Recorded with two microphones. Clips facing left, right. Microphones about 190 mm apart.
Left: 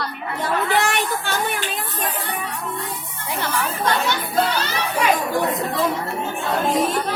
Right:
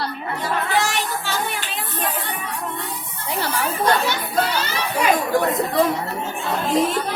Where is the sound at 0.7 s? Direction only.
60° left (ahead or behind).